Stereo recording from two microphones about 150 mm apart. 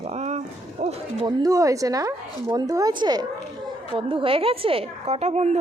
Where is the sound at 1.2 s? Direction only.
25° right (ahead or behind).